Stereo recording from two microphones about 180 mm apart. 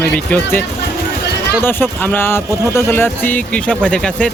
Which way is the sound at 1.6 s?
10° left (ahead or behind).